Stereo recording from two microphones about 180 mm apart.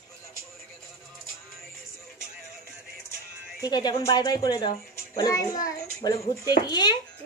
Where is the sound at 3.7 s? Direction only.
25° left (ahead or behind).